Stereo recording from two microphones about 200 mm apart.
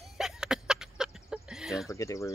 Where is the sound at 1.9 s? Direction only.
15° left (ahead or behind).